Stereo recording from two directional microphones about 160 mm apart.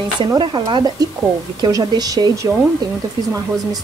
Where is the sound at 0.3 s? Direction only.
25° right (ahead or behind).